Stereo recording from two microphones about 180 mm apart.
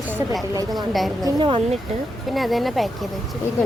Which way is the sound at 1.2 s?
30° right (ahead or behind).